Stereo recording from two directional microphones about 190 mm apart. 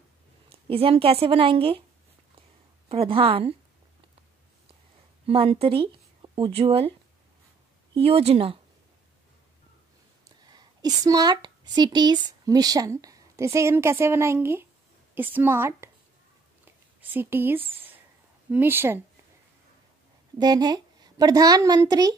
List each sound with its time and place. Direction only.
0.5 s a woman's voice: 30° right (ahead or behind)
2.9 s a woman's voice: 30° right (ahead or behind)
5.2 s speech: 30° right (ahead or behind)
7.9 s speech: 30° right (ahead or behind)
10.4 s a woman's voice: 20° right (ahead or behind)
17.1 s a woman's voice: 10° right (ahead or behind)
20.3 s a woman's voice: 20° right (ahead or behind)